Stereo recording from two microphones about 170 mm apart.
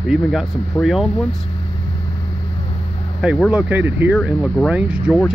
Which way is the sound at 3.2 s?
5° right (ahead or behind).